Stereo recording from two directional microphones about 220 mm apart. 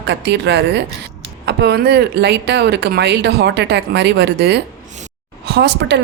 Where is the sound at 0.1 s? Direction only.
50° right (ahead or behind).